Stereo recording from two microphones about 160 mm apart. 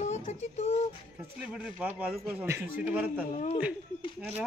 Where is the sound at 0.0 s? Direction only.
45° left (ahead or behind).